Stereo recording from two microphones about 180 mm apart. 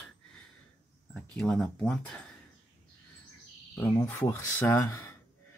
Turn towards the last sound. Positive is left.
turn(degrees=15)  # may be behind; listen again after turning